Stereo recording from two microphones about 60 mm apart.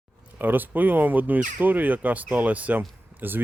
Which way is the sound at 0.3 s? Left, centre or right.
Right.